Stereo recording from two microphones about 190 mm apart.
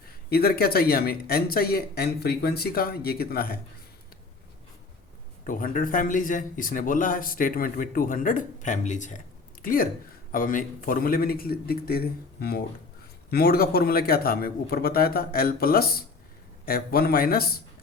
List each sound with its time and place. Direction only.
0.3 s speech: 55° left (ahead or behind)
5.5 s speech: 45° left (ahead or behind)